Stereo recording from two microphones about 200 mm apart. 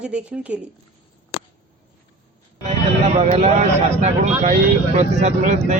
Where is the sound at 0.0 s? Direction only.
5° right (ahead or behind).